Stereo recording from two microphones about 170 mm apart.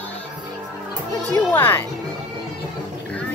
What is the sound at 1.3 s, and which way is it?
Speech, 10° left (ahead or behind).